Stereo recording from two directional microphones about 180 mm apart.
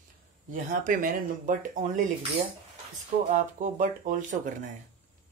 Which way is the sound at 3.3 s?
45° right (ahead or behind).